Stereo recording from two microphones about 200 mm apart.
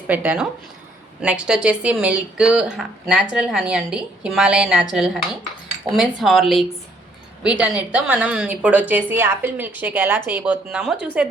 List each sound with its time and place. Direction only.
0.1 s a woman's voice: 10° right (ahead or behind)